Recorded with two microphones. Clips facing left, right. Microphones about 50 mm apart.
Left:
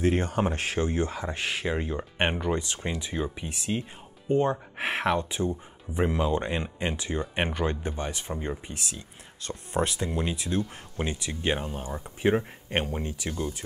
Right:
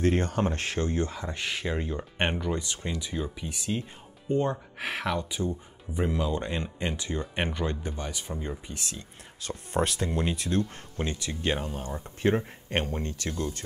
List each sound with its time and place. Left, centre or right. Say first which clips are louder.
0.0 s speech: left 1 dB; centre
4.7 s speech: left 4 dB; left
8.9 s speech: even; centre